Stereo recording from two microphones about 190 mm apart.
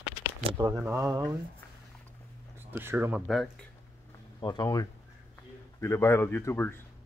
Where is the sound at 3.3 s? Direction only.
Centre (ahead or behind).